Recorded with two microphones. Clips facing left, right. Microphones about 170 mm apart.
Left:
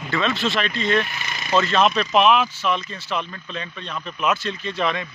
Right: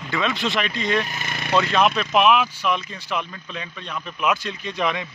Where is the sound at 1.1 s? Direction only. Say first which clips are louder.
Right 1 dB; 50° right (ahead or behind).